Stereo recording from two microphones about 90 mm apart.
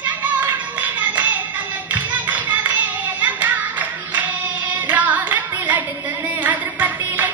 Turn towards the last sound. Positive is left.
turn(degrees=-20)  # may be behind; listen again after turning